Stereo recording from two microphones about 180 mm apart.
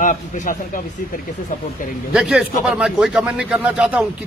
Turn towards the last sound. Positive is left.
turn(degrees=-5)  # may be behind; listen again after turning